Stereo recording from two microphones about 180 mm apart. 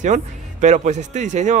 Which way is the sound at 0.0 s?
45° right (ahead or behind).